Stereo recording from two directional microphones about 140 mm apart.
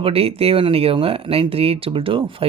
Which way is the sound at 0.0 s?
45° right (ahead or behind).